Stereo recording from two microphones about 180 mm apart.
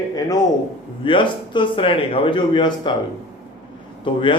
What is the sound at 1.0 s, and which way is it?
Speech, 25° left (ahead or behind).